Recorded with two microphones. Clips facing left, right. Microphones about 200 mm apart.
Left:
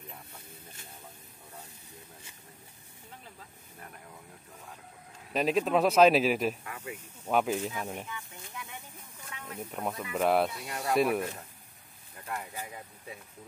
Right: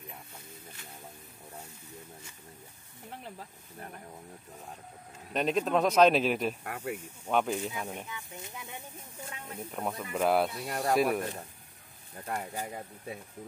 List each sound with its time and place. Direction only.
5.3 s speech: 5° left (ahead or behind)
6.6 s speech: 55° right (ahead or behind)
7.2 s speech: 5° left (ahead or behind)
8.1 s speech: 20° right (ahead or behind)
9.3 s snake: 25° right (ahead or behind)
9.6 s speech: 5° left (ahead or behind)
12.3 s speech: 40° right (ahead or behind)